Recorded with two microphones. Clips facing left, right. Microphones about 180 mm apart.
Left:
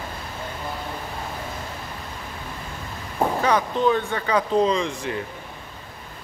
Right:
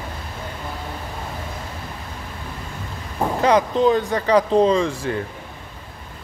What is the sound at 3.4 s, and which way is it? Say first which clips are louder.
Speech: right 6 dB; 35° right (ahead or behind).